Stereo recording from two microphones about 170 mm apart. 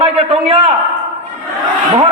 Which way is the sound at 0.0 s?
30° right (ahead or behind).